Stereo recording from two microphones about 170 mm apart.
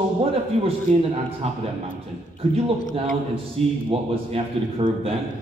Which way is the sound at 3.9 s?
35° right (ahead or behind).